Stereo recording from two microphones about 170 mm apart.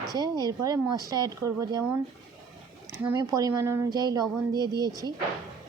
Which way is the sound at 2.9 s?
10° right (ahead or behind).